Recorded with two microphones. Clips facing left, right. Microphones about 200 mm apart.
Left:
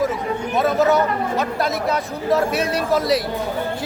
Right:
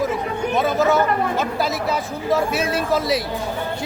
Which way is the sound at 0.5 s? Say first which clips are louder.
Left 1 dB; centre (ahead or behind).